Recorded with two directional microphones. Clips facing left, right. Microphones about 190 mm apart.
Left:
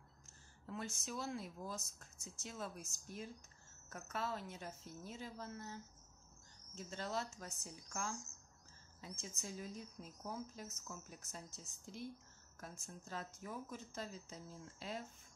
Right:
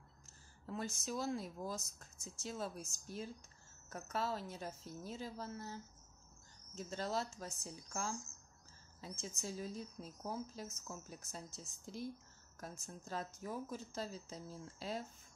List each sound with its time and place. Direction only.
0.7 s speech: 35° right (ahead or behind)